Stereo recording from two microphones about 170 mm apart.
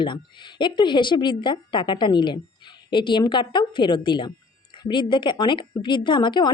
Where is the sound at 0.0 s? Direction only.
30° left (ahead or behind).